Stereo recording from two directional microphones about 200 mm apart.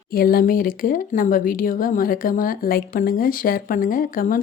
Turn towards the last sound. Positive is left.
turn(degrees=45)  # may be behind; listen again after turning